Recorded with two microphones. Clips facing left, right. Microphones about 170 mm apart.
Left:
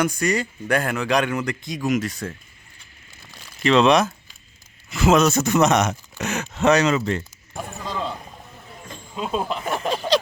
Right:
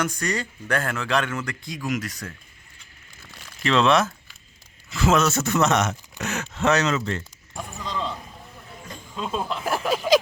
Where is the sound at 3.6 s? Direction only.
20° left (ahead or behind).